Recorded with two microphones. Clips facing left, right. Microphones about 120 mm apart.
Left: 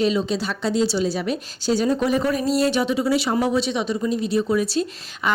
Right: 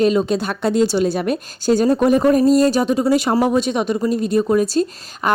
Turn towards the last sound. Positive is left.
turn(degrees=-45)  # may be behind; listen again after turning